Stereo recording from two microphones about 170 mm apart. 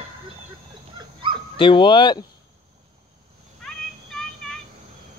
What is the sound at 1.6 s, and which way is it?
Speech, 30° left (ahead or behind).